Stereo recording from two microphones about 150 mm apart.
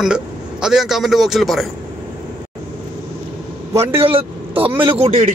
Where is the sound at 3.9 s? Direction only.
35° right (ahead or behind).